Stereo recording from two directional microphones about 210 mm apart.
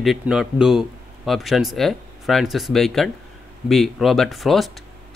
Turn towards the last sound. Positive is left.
turn(degrees=0)  # may be behind; listen again after turning